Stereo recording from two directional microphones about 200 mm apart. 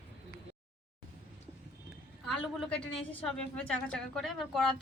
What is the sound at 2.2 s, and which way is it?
A woman's voice, centre (ahead or behind).